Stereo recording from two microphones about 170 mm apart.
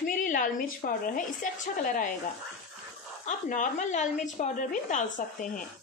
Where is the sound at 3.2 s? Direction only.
50° left (ahead or behind).